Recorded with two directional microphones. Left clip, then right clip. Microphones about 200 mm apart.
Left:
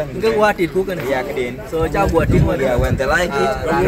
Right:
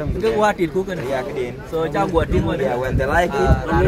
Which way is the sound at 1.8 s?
Centre (ahead or behind).